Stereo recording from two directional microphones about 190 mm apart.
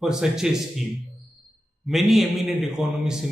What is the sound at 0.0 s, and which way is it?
Speech, 5° right (ahead or behind).